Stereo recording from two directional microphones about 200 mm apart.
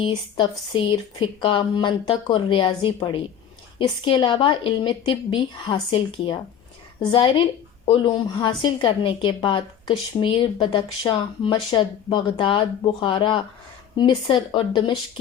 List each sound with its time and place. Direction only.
0.3 s a woman's voice: 25° left (ahead or behind)